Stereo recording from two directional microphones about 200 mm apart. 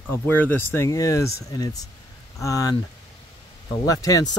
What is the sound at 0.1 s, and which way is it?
Speech, 10° left (ahead or behind).